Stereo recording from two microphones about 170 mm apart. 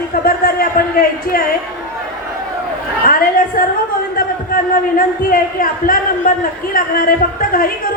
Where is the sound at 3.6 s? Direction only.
55° left (ahead or behind).